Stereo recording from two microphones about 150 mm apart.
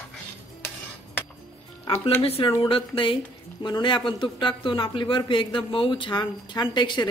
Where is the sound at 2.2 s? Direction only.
40° left (ahead or behind).